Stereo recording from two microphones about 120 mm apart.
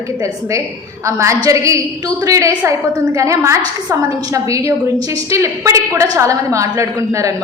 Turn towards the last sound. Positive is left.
turn(degrees=-25)  # may be behind; listen again after turning